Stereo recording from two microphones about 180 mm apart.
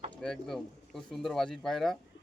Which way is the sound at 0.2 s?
Centre (ahead or behind).